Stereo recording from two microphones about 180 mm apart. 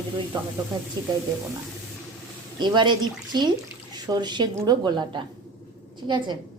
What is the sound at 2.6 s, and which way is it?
A woman's voice, 25° right (ahead or behind).